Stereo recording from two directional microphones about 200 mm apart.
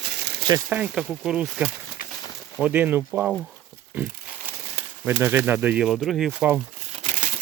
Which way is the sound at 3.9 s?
10° right (ahead or behind).